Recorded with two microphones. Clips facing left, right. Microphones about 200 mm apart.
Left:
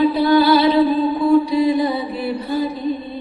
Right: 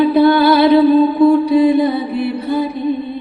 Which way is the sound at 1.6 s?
55° right (ahead or behind).